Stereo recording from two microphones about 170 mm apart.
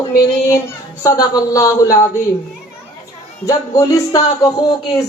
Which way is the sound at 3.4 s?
20° left (ahead or behind).